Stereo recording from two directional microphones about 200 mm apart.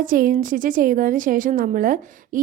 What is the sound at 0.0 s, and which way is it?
A woman's voice, 45° right (ahead or behind).